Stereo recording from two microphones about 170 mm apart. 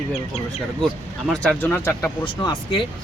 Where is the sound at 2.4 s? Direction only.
30° left (ahead or behind).